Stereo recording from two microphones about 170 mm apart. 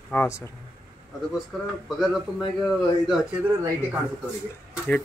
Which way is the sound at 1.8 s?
5° right (ahead or behind).